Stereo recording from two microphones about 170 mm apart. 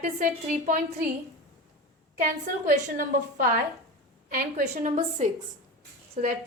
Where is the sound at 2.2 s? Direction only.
50° right (ahead or behind).